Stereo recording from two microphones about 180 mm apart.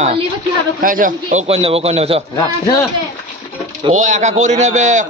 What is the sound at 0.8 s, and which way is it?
A man's voice, 50° right (ahead or behind).